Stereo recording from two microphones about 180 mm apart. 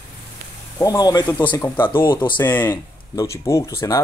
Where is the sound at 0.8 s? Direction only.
20° left (ahead or behind).